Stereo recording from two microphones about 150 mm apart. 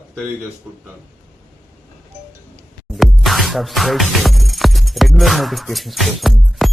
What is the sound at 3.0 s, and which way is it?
Music, centre (ahead or behind).